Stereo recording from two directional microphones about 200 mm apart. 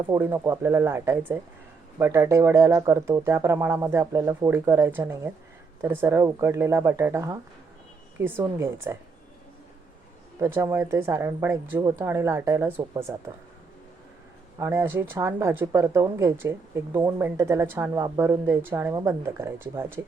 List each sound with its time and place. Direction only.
0.0 s speech: 10° right (ahead or behind)
10.4 s speech: 10° right (ahead or behind)
14.6 s speech: 15° right (ahead or behind)